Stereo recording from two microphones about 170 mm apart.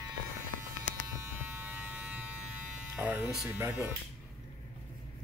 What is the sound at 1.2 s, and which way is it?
Electric shaver, 10° right (ahead or behind).